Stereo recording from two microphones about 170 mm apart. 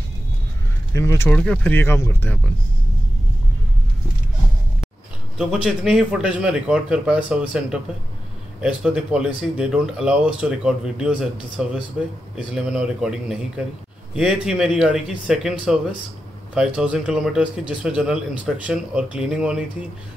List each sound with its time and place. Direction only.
0.9 s speech: 15° left (ahead or behind)
5.4 s speech: 5° right (ahead or behind)